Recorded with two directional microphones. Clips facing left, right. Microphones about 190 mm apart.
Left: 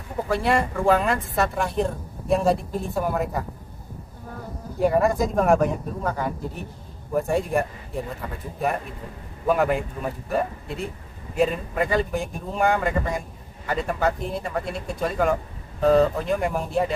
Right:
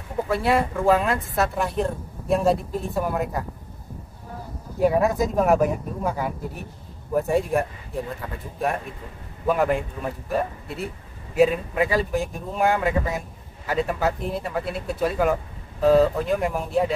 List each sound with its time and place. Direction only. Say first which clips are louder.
0.3 s speech: even; centre (ahead or behind)
4.7 s speech: even; 5° right (ahead or behind)
9.5 s speech: even; centre (ahead or behind)